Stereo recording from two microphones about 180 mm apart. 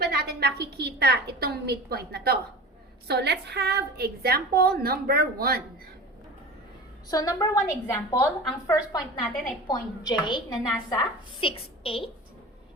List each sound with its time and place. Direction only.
0.0 s a woman's voice: 60° right (ahead or behind)
7.1 s a woman's voice: 20° left (ahead or behind)